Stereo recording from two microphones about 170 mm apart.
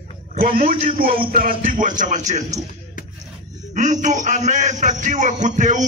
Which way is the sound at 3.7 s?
45° right (ahead or behind).